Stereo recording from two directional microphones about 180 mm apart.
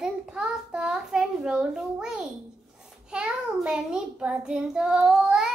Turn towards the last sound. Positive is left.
turn(degrees=-5)  # may be behind; listen again after turning